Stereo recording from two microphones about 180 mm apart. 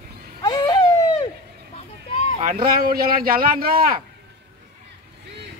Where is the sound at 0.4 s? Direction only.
25° left (ahead or behind).